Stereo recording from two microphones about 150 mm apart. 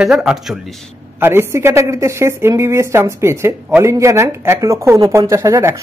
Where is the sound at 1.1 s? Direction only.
15° right (ahead or behind).